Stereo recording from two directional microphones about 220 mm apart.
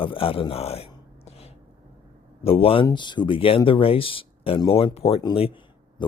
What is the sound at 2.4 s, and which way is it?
Speech, 25° left (ahead or behind).